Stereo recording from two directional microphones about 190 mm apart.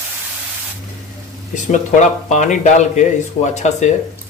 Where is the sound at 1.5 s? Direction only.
40° left (ahead or behind).